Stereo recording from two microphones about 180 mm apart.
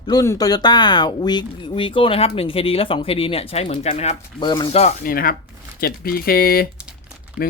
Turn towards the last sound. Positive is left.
turn(degrees=-5)  # may be behind; listen again after turning